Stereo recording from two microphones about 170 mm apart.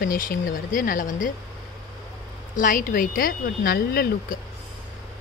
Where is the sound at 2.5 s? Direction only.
50° left (ahead or behind).